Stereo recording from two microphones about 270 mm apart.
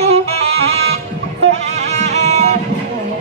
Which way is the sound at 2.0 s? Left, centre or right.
Right.